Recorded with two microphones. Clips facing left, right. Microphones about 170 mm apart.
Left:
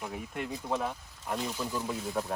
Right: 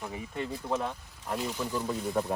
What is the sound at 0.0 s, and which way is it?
Speech, centre (ahead or behind).